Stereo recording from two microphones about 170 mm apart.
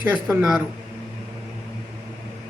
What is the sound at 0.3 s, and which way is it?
Speech, 5° right (ahead or behind).